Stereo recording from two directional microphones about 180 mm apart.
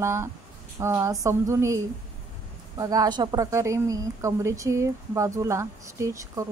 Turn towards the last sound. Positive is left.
turn(degrees=-15)  # may be behind; listen again after turning